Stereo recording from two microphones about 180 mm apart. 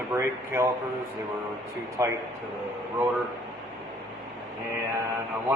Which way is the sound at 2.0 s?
15° right (ahead or behind).